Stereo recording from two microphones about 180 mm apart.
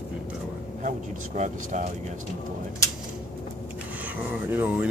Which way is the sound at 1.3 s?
40° right (ahead or behind).